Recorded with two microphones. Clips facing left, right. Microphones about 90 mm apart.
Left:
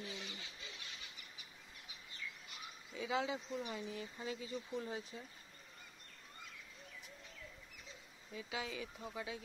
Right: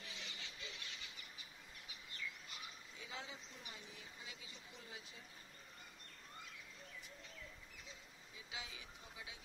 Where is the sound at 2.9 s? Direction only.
90° left; by 4.2 s 60° left (ahead or behind).